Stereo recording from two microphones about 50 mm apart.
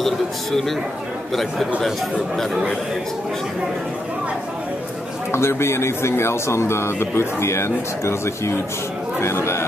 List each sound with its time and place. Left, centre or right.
0.0 s a man's voice: centre
5.3 s speech: left